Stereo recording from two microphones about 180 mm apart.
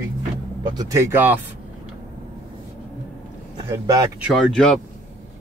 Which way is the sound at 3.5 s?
20° right (ahead or behind).